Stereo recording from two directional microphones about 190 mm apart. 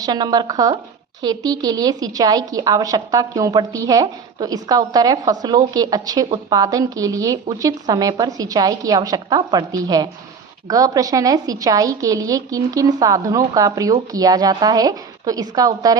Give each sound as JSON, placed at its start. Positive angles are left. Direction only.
{"t": 0.0, "sound": "a woman's voice", "side_deg": -20}